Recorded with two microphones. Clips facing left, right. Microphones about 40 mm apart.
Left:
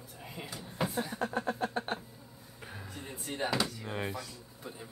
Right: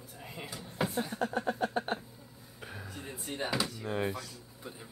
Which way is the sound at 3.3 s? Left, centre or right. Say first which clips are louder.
Left 1 dB; centre.